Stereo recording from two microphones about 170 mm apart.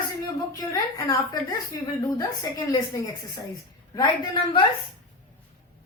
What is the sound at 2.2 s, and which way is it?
Speech, 20° left (ahead or behind).